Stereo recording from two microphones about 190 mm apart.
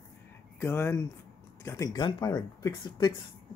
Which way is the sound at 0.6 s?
10° left (ahead or behind).